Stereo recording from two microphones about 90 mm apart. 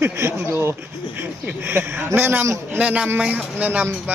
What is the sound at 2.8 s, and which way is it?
A man's voice, 15° right (ahead or behind).